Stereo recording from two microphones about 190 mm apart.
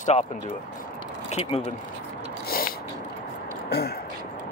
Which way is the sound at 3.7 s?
60° left (ahead or behind).